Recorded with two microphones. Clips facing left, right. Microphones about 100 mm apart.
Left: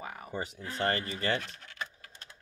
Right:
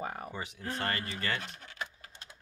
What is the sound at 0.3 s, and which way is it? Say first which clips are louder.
Speech: left 4 dB; 40° left (ahead or behind).